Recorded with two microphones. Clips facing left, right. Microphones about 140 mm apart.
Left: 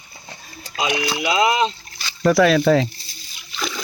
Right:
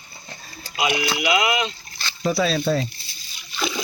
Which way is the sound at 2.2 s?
85° left.